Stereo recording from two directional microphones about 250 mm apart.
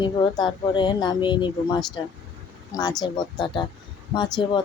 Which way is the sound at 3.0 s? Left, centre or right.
Centre.